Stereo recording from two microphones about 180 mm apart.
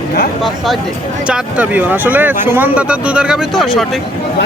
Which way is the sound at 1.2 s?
5° right (ahead or behind).